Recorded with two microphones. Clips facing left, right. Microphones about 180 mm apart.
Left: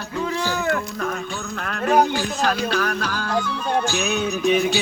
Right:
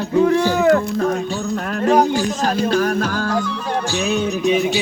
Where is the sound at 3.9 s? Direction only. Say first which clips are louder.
Right 3 dB; 30° right (ahead or behind).